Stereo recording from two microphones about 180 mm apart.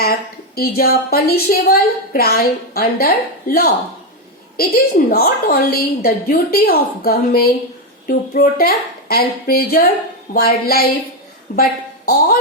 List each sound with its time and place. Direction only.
0.0 s a woman's voice: 55° left (ahead or behind)